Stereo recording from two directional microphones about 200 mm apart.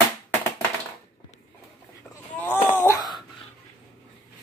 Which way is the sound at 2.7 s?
10° left (ahead or behind).